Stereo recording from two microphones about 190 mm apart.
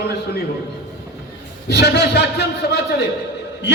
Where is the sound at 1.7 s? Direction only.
60° left (ahead or behind).